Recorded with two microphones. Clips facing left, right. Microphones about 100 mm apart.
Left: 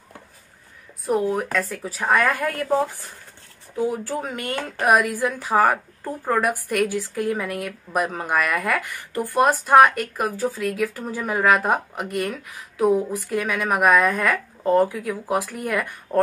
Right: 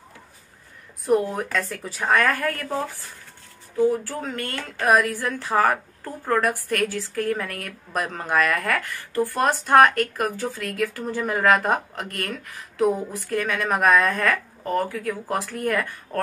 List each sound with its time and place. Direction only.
1.0 s speech: centre (ahead or behind)
3.7 s speech: 15° left (ahead or behind)
14.6 s speech: 20° left (ahead or behind)